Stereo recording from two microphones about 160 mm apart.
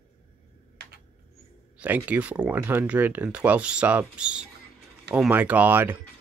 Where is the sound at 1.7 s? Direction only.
10° right (ahead or behind).